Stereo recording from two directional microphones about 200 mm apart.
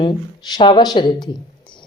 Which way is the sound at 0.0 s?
20° left (ahead or behind).